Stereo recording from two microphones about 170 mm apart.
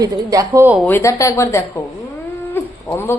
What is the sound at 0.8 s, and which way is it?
Speech, 15° left (ahead or behind).